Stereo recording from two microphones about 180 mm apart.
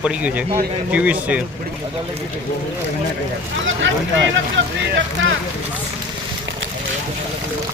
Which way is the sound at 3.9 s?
90° right.